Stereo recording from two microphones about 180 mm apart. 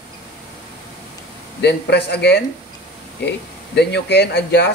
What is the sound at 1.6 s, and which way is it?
Speech, 70° left (ahead or behind).